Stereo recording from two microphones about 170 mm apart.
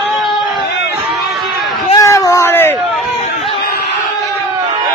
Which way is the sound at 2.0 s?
20° left (ahead or behind).